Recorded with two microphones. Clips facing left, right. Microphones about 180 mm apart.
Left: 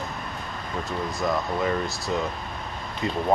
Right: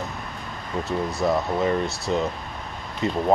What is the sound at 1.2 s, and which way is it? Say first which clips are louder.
Speech: right 4 dB; 30° right (ahead or behind).